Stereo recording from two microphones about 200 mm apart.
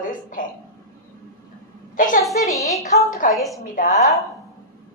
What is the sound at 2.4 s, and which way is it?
Speech, 15° left (ahead or behind).